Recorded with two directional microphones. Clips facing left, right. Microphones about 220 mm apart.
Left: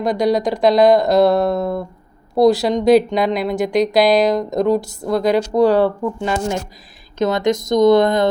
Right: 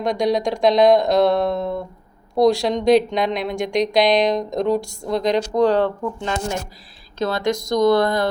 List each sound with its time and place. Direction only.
0.0 s speech: centre (ahead or behind)
7.2 s speech: 20° left (ahead or behind)